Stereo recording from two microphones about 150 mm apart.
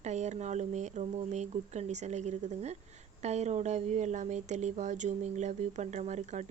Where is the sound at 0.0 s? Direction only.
50° right (ahead or behind).